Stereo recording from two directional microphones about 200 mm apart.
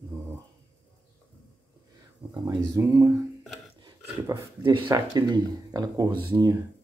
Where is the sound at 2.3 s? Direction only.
15° right (ahead or behind).